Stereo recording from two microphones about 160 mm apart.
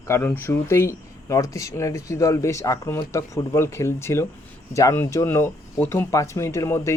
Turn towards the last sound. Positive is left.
turn(degrees=15)  # may be behind; listen again after turning